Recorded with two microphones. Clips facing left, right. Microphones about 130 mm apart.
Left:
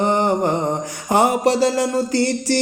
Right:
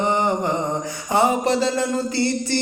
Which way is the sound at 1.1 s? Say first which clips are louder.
Left 2 dB; 40° left (ahead or behind).